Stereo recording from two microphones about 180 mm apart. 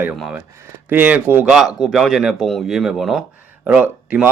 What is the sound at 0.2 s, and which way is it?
A man's voice, 5° right (ahead or behind).